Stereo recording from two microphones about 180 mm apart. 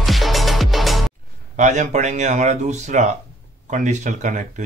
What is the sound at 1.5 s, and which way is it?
Speech, 45° right (ahead or behind).